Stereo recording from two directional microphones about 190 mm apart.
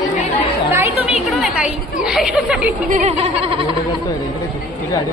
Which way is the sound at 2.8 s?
35° right (ahead or behind).